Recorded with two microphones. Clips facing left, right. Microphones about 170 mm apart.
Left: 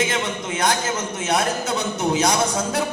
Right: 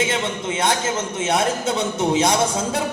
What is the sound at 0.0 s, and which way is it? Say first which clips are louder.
A man's voice: right 1 dB; 25° right (ahead or behind).